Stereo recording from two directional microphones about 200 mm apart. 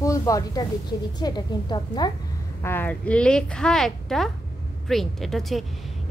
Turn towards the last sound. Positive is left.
turn(degrees=0)  # may be behind; listen again after turning